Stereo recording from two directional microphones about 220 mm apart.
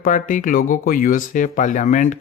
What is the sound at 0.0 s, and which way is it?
Speech, 35° left (ahead or behind).